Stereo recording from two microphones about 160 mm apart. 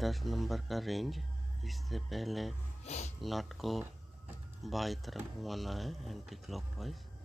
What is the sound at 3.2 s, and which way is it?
Speech, centre (ahead or behind).